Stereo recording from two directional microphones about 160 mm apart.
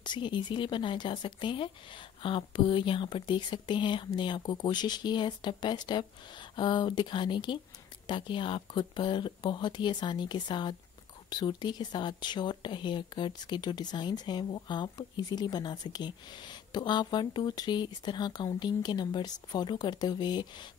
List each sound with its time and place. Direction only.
0.0 s speech: 30° left (ahead or behind)